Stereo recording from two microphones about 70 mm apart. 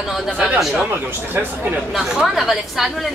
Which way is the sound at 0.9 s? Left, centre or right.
Right.